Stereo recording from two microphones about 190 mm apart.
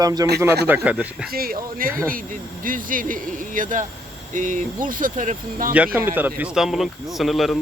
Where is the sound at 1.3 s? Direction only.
50° right (ahead or behind).